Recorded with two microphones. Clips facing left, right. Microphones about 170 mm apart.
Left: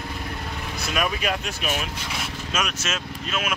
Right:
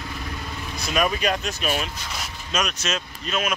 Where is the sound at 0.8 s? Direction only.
Centre (ahead or behind).